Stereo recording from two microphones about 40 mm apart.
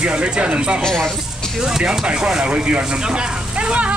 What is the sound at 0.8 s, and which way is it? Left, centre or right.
Speech, centre.